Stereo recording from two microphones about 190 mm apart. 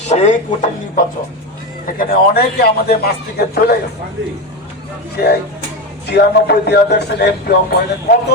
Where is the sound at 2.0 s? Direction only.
50° left (ahead or behind).